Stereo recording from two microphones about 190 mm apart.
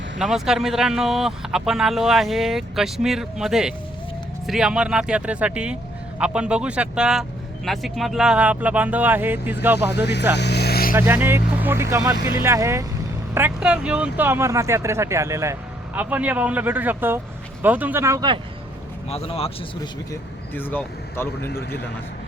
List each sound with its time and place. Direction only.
0.2 s speech: 5° right (ahead or behind)
9.7 s speech: 60° left (ahead or behind)
10.3 s vehicle: 60° left (ahead or behind)
10.9 s speech: 10° right (ahead or behind)
19.0 s speech: 30° left (ahead or behind)
20.6 s speech: 10° left (ahead or behind)
21.4 s speech: 55° left (ahead or behind)